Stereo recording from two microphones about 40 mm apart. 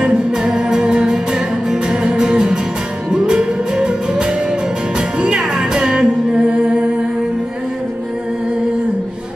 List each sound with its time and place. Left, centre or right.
0.0 s music: centre